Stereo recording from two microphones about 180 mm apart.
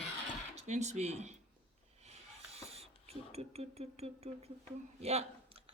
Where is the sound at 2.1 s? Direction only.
35° right (ahead or behind).